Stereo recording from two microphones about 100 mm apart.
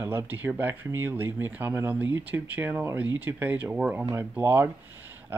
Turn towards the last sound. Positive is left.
turn(degrees=-20)  # may be behind; listen again after turning